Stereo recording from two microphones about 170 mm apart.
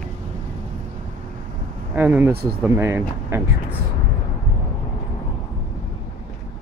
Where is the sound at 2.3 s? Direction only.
65° right (ahead or behind).